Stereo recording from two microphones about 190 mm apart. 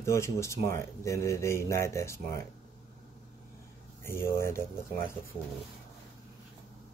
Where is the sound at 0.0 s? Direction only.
15° left (ahead or behind).